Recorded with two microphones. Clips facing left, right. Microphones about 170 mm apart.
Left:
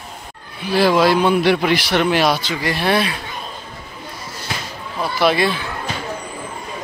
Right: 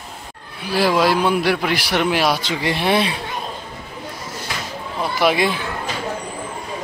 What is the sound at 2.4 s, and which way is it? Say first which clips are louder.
Speech: even; 20° right (ahead or behind).